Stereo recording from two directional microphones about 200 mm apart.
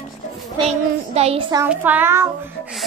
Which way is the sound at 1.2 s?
30° right (ahead or behind).